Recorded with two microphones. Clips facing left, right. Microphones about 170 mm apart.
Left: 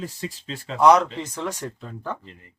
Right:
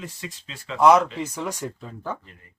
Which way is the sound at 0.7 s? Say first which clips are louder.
Even; centre (ahead or behind).